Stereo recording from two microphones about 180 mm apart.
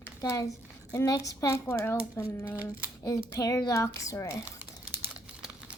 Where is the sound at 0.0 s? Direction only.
15° left (ahead or behind).